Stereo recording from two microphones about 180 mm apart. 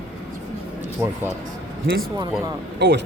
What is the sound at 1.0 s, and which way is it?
Speech, 10° right (ahead or behind).